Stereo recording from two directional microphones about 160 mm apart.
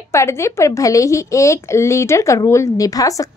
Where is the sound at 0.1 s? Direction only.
15° left (ahead or behind).